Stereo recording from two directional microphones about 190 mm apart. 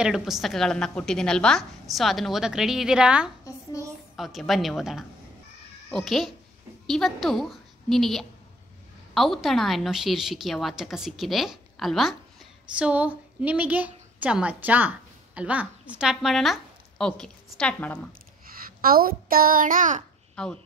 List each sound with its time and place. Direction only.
0.0 s a woman's voice: centre (ahead or behind)
18.8 s a child's voice: 50° right (ahead or behind)
20.3 s speech: 5° left (ahead or behind)